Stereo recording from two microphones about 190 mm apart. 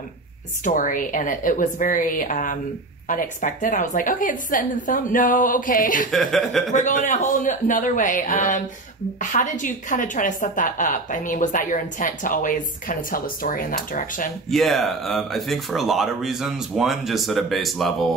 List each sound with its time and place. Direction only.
0.7 s a woman's voice: 45° left (ahead or behind)
6.1 s speech: centre (ahead or behind)
6.7 s a man's voice: 40° left (ahead or behind)
14.5 s speech: centre (ahead or behind)